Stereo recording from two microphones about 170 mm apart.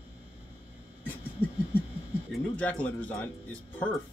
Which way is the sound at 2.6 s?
10° left (ahead or behind).